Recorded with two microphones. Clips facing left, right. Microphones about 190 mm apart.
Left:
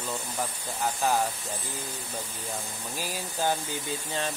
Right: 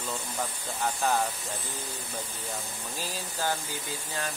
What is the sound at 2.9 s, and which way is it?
Speech, 15° left (ahead or behind).